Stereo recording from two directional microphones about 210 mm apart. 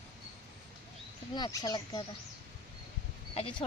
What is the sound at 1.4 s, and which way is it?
Speech, 20° left (ahead or behind).